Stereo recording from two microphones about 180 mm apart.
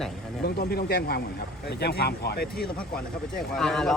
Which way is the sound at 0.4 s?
60° left (ahead or behind).